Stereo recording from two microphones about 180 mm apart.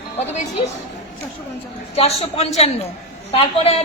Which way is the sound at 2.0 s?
35° left (ahead or behind).